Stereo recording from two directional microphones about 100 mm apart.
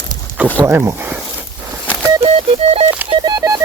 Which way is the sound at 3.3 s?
45° right (ahead or behind).